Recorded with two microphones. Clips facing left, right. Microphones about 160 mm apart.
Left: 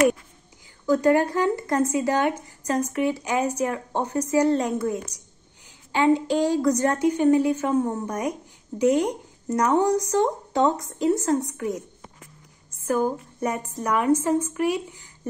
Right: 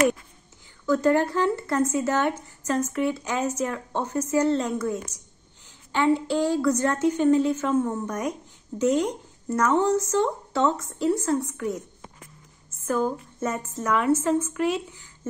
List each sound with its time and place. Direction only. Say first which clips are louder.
0.8 s a woman's voice: left 2 dB; 15° left (ahead or behind)
7.6 s a woman's voice: left 1 dB; 35° left (ahead or behind)
8.1 s a woman's voice: left 1 dB; 10° left (ahead or behind)
13.4 s a woman's voice: left 1 dB; 15° left (ahead or behind)